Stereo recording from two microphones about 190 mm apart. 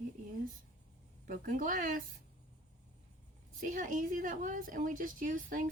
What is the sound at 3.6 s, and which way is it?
A woman's voice, 45° right (ahead or behind).